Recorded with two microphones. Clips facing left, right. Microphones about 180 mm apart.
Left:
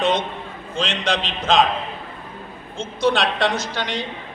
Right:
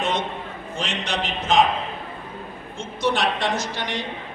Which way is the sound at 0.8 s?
90° left.